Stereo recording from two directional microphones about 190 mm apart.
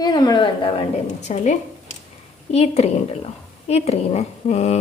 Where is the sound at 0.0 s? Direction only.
20° left (ahead or behind).